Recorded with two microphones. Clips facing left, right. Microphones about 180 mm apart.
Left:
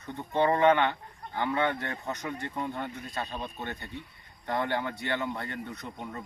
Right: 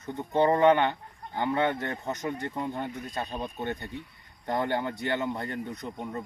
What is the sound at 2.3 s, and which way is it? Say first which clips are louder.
Speech: right 2 dB; 20° right (ahead or behind).